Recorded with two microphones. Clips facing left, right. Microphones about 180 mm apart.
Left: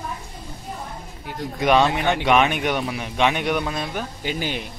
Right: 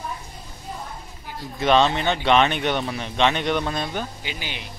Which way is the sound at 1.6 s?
10° left (ahead or behind).